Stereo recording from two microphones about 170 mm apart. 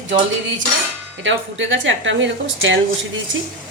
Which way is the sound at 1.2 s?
90° right.